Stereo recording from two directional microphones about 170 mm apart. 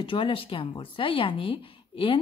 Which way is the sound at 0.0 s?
30° left (ahead or behind).